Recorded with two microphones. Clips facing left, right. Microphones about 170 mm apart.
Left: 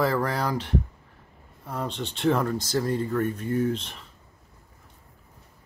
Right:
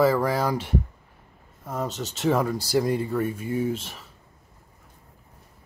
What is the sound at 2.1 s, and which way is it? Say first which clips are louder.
Speech: even; 5° right (ahead or behind).